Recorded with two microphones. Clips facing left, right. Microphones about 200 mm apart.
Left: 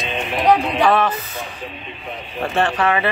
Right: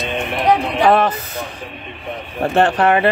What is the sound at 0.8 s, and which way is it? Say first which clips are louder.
Speech: right 4 dB; 50° right (ahead or behind).